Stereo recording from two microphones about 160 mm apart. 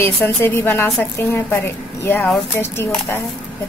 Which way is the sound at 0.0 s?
15° left (ahead or behind).